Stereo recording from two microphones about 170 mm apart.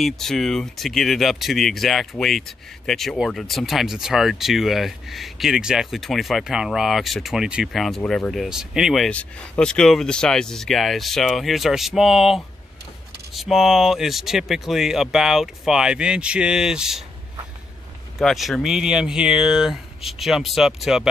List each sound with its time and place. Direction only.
0.0 s speech: centre (ahead or behind)
18.2 s speech: centre (ahead or behind)